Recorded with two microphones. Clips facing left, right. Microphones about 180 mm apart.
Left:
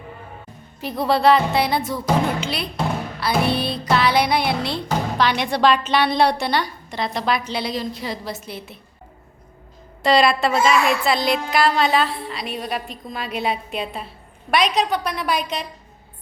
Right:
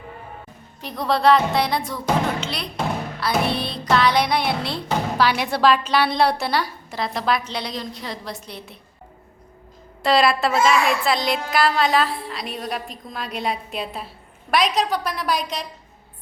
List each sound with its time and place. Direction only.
0.8 s a woman's voice: 5° left (ahead or behind)
3.2 s a woman's voice: centre (ahead or behind)
10.0 s a woman's voice: centre (ahead or behind)